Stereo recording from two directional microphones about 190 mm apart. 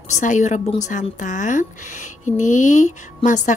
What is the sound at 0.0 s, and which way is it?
Speech, 40° left (ahead or behind).